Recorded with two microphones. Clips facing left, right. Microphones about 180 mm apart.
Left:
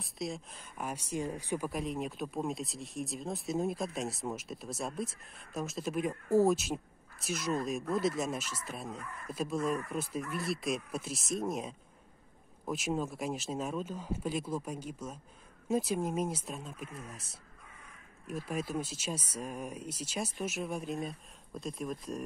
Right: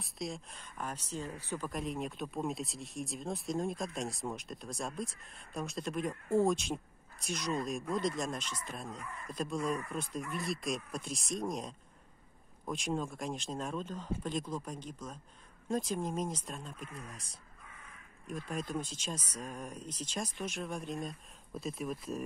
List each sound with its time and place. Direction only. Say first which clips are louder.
0.0 s speech: left 2 dB; centre (ahead or behind)
1.7 s speech: left 2 dB; centre (ahead or behind)